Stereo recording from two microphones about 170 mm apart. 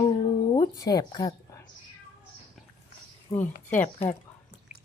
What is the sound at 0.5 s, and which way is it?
Speech, 20° left (ahead or behind).